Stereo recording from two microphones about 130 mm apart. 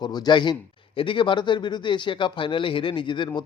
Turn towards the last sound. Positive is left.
turn(degrees=40)  # may be behind; listen again after turning